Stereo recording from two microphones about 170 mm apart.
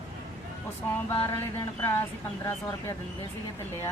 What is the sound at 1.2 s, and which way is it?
Speech, 15° left (ahead or behind).